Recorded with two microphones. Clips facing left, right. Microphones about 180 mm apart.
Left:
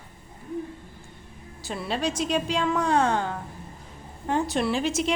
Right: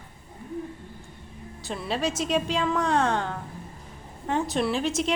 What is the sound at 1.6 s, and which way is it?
A woman's voice, centre (ahead or behind).